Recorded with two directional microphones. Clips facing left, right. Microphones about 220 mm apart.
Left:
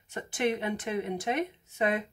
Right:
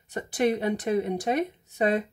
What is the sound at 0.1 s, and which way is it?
Speech, 35° right (ahead or behind).